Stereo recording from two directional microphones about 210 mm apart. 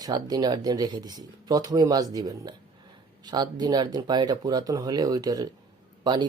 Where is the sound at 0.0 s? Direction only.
20° right (ahead or behind).